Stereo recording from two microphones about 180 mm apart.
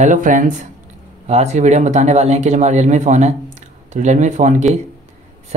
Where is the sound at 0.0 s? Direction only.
45° right (ahead or behind).